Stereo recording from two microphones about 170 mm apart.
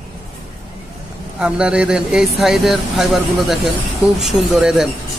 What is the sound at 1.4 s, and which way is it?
A man's voice, 5° right (ahead or behind).